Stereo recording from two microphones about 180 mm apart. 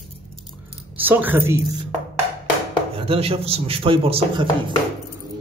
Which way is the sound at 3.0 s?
35° right (ahead or behind).